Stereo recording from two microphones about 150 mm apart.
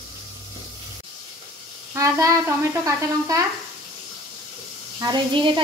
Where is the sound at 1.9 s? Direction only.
20° right (ahead or behind).